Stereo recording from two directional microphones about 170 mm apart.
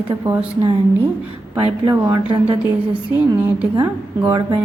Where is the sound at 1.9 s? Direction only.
25° right (ahead or behind).